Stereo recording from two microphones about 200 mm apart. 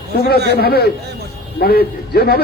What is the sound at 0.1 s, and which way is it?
A man's voice, 50° left (ahead or behind).